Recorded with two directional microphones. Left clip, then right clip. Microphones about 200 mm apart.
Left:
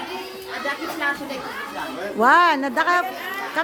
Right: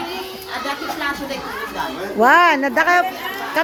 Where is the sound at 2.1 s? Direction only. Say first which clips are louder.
Right 3 dB; 5° right (ahead or behind).